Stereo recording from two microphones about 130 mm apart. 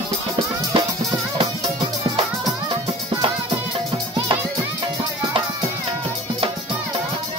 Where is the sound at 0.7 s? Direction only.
40° right (ahead or behind).